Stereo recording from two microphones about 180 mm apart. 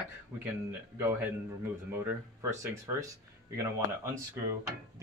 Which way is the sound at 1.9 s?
15° right (ahead or behind).